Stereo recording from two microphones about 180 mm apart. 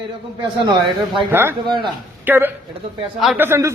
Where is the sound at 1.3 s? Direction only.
10° right (ahead or behind).